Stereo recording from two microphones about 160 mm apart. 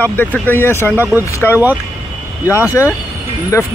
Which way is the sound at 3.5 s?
20° left (ahead or behind).